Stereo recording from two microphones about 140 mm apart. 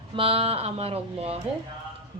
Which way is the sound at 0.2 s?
45° right (ahead or behind).